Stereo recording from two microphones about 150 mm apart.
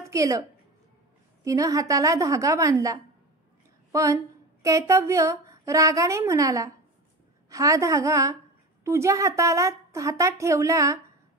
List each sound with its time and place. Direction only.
0.0 s a woman's voice: 20° right (ahead or behind)